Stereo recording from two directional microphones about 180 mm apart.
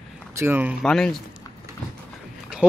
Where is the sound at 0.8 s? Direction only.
5° left (ahead or behind).